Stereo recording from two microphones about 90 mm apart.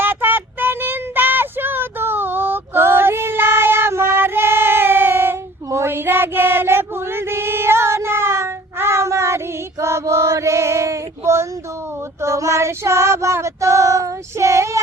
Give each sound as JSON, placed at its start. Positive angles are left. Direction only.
{"t": 0.0, "sound": "child singing", "side_deg": -25}